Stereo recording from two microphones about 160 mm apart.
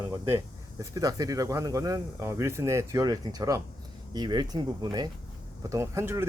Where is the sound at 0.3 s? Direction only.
20° right (ahead or behind).